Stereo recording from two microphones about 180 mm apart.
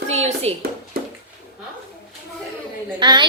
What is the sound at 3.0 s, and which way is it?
Speech, 25° right (ahead or behind).